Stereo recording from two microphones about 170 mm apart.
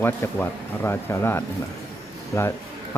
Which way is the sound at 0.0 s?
10° left (ahead or behind).